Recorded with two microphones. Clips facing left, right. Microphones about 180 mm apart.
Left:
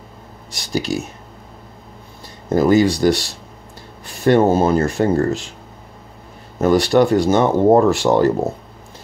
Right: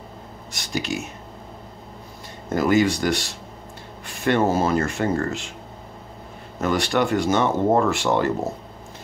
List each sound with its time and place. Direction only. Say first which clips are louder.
0.5 s speech: left 5 dB; 35° left (ahead or behind)
2.5 s speech: left 5 dB; 35° left (ahead or behind)
6.6 s speech: left 8 dB; 35° left (ahead or behind)